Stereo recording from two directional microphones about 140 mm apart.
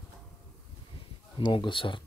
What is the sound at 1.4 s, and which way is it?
Speech, 35° left (ahead or behind).